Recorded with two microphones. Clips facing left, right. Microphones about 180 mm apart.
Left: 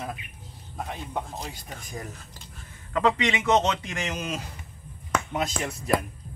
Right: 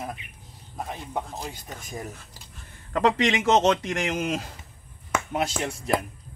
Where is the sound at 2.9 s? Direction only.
45° right (ahead or behind).